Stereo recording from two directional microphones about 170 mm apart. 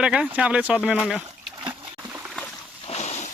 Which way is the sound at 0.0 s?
5° right (ahead or behind).